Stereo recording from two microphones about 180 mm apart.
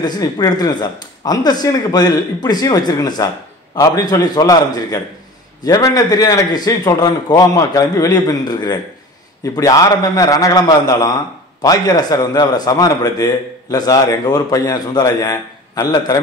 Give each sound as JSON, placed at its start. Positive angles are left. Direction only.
{"t": 0.0, "sound": "a man's voice", "side_deg": 20}